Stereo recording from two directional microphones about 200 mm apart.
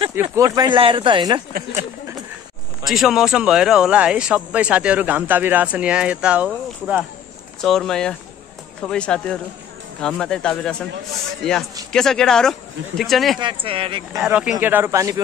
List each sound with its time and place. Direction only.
0.1 s speech: 15° right (ahead or behind)
2.8 s speech: centre (ahead or behind)
11.9 s speech: centre (ahead or behind)
13.4 s speech: 25° right (ahead or behind)
14.1 s speech: 5° right (ahead or behind)